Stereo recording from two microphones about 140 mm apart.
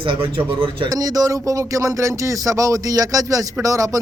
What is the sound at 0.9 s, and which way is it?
Speech, 25° right (ahead or behind).